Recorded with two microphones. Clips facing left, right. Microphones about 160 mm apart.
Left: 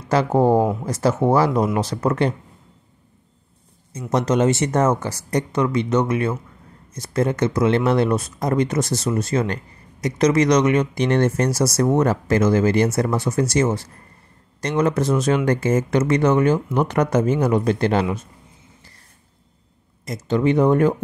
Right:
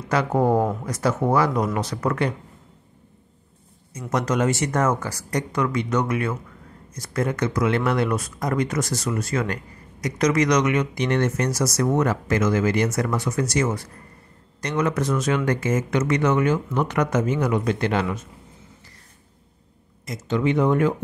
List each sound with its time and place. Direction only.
0.1 s speech: 30° left (ahead or behind)
4.1 s speech: 25° left (ahead or behind)
20.1 s speech: 35° left (ahead or behind)